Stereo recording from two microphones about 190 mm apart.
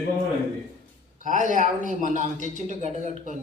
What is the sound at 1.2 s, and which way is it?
A man's voice, 45° right (ahead or behind).